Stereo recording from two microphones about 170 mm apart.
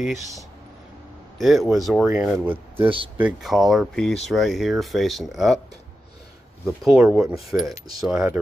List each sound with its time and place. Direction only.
1.4 s speech: centre (ahead or behind)
2.8 s speech: 30° right (ahead or behind)
3.2 s speech: 5° right (ahead or behind)
6.6 s speech: centre (ahead or behind)